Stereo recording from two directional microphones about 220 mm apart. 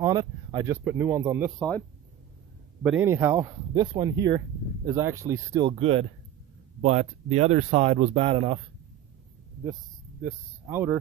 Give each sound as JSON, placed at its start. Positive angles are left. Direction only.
{"t": 0.0, "sound": "speech", "side_deg": -15}
{"t": 2.8, "sound": "speech", "side_deg": -5}
{"t": 5.7, "sound": "speech", "side_deg": -25}
{"t": 10.2, "sound": "speech", "side_deg": -10}